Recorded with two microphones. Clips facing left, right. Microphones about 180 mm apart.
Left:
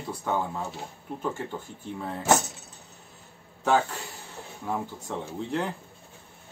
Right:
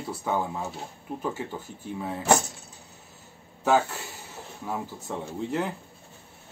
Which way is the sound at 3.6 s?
5° right (ahead or behind).